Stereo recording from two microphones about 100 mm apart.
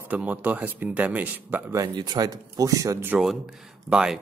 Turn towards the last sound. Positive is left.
turn(degrees=-10)  # may be behind; listen again after turning